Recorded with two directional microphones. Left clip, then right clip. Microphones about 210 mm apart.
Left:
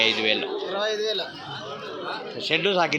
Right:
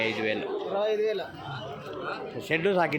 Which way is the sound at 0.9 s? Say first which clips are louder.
Left 1 dB; 50° right (ahead or behind).